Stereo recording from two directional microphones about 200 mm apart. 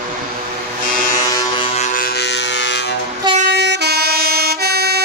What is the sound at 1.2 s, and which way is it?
Vehicle, 25° left (ahead or behind).